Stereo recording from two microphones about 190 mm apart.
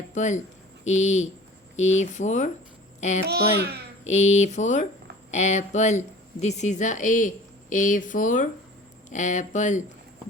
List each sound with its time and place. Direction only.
0.1 s speech: 40° left (ahead or behind)
3.2 s a child's voice: 55° right (ahead or behind)
4.0 s speech: 35° left (ahead or behind)